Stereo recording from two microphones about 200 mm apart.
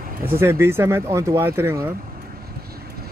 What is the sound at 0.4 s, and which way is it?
Speech, 15° right (ahead or behind).